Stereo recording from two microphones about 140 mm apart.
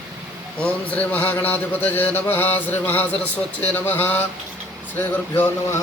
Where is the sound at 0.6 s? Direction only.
10° left (ahead or behind).